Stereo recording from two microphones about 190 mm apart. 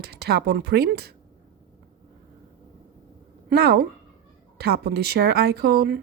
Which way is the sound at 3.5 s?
55° right (ahead or behind).